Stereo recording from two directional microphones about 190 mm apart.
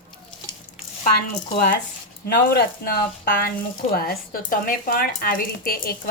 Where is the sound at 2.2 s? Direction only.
55° left (ahead or behind).